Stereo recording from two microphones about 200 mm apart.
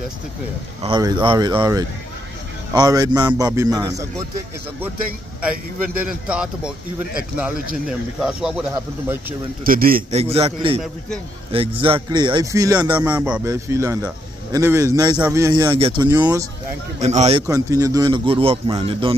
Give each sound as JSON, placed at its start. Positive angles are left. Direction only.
{"t": 0.8, "sound": "a man's voice", "side_deg": -20}
{"t": 6.2, "sound": "speech", "side_deg": -5}
{"t": 8.2, "sound": "speech", "side_deg": -5}
{"t": 9.7, "sound": "a man's voice", "side_deg": -45}
{"t": 10.1, "sound": "speech", "side_deg": -30}
{"t": 13.0, "sound": "a man's voice", "side_deg": -5}
{"t": 17.0, "sound": "a man's voice", "side_deg": -35}
{"t": 17.5, "sound": "speech", "side_deg": -15}